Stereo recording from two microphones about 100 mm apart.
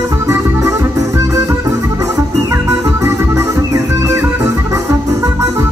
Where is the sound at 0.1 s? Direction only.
30° right (ahead or behind).